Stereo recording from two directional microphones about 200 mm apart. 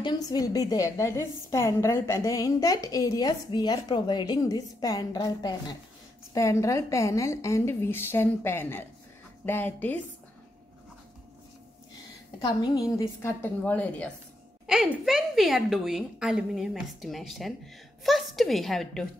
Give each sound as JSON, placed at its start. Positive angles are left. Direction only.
{"t": 0.0, "sound": "a woman's voice", "side_deg": 20}
{"t": 12.4, "sound": "a woman's voice", "side_deg": 20}